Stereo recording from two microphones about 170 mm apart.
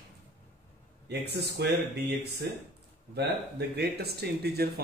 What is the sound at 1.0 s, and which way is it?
Speech, 75° right (ahead or behind).